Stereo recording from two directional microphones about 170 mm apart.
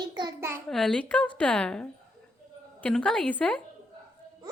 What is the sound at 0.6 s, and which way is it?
A woman's voice, centre (ahead or behind).